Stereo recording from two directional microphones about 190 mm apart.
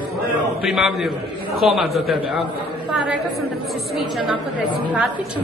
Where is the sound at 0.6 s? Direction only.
Centre (ahead or behind).